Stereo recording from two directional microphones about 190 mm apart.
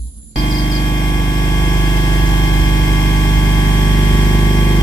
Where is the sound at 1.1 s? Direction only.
20° left (ahead or behind).